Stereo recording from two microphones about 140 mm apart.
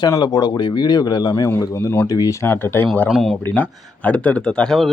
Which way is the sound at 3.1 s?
5° right (ahead or behind).